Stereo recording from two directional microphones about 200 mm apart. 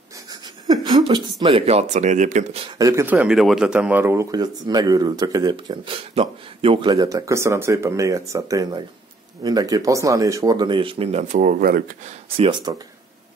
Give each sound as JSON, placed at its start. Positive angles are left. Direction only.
{"t": 0.3, "sound": "a sound", "side_deg": -20}
{"t": 1.4, "sound": "speech", "side_deg": -30}
{"t": 2.8, "sound": "a man's voice", "side_deg": -15}
{"t": 12.4, "sound": "speech", "side_deg": -25}